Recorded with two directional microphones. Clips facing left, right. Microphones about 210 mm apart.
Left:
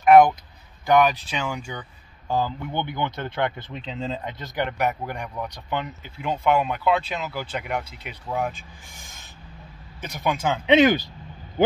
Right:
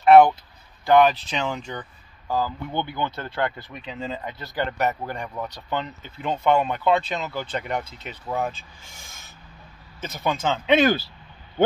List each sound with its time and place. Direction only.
0.0 s a sound: 10° left (ahead or behind)
0.8 s speech: 15° left (ahead or behind)
2.2 s speech: 25° left (ahead or behind)